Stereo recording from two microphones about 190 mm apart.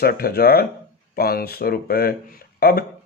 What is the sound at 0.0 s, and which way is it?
Speech, 55° left (ahead or behind).